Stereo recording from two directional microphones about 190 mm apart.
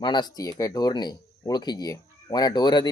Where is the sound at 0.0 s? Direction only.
20° left (ahead or behind).